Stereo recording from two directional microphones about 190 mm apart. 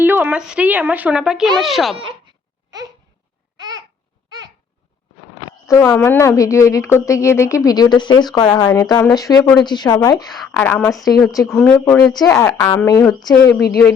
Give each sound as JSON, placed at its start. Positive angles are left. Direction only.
{"t": 0.0, "sound": "a child's voice", "side_deg": -10}
{"t": 3.6, "sound": "babbling", "side_deg": -20}
{"t": 5.6, "sound": "speech", "side_deg": 15}
{"t": 10.2, "sound": "speech", "side_deg": 0}
{"t": 10.5, "sound": "speech", "side_deg": 10}